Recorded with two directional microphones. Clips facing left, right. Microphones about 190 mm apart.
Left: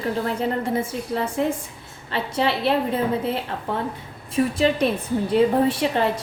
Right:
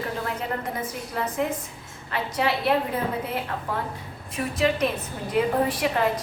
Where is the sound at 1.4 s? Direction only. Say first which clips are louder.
Left 3 dB; 30° left (ahead or behind).